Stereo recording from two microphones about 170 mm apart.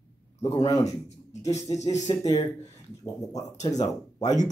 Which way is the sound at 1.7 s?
40° left (ahead or behind).